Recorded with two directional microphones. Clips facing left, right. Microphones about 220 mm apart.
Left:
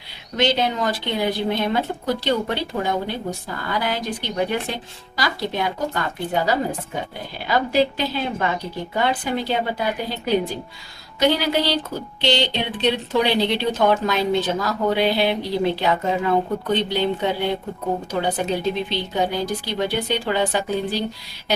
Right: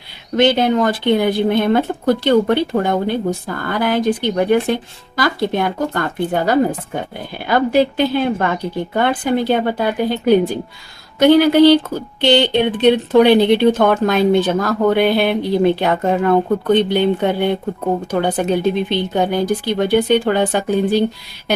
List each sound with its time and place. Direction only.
0.3 s speech: 55° right (ahead or behind)